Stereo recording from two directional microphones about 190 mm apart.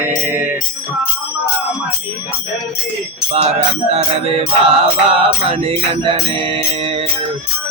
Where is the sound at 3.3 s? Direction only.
35° right (ahead or behind).